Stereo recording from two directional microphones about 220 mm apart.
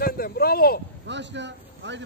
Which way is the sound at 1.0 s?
55° right (ahead or behind).